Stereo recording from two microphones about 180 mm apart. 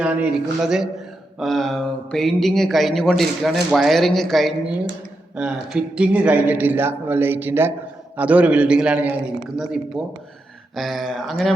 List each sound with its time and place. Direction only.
0.0 s a man's voice: 5° right (ahead or behind)